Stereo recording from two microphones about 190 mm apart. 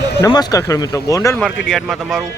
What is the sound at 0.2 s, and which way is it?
Speech, 20° left (ahead or behind).